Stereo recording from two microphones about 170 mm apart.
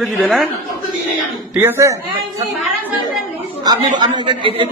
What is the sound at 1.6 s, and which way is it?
Speech, 15° right (ahead or behind).